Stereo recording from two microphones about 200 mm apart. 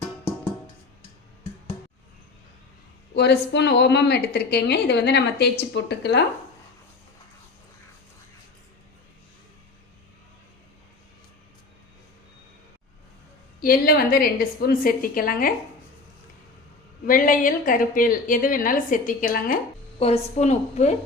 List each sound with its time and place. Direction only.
3.2 s a woman's voice: 55° left (ahead or behind)
13.6 s a woman's voice: 45° left (ahead or behind)
17.1 s a woman's voice: 45° left (ahead or behind)
20.0 s a woman's voice: 35° left (ahead or behind)